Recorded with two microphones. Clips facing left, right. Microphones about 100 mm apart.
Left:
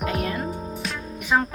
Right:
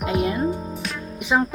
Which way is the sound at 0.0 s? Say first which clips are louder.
Right 4 dB; 20° right (ahead or behind).